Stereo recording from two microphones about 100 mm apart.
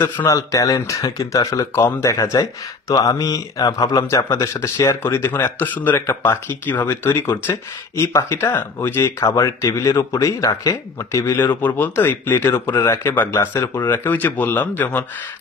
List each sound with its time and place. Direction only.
0.2 s speech: 35° left (ahead or behind)
11.3 s speech: 20° left (ahead or behind)